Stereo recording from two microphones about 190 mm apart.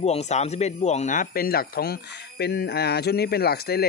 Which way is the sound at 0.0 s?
35° left (ahead or behind).